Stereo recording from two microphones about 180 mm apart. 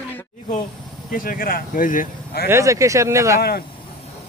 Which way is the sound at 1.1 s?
50° left (ahead or behind).